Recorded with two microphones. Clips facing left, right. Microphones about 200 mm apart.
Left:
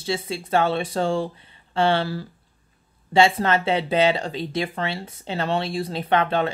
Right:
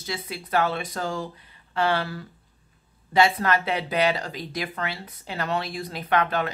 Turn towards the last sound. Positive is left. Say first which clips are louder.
# left 3 dB
turn(degrees=30)  # may be behind; listen again after turning